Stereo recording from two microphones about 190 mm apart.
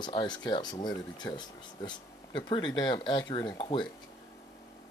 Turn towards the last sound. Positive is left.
turn(degrees=25)  # may be behind; listen again after turning